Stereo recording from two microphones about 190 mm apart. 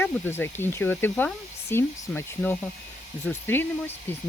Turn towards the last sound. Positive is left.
turn(degrees=10)  # may be behind; listen again after turning